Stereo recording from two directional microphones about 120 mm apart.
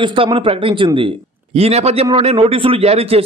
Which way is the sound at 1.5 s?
60° right (ahead or behind).